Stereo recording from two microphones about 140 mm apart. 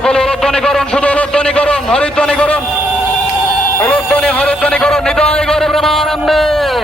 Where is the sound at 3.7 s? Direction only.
10° left (ahead or behind).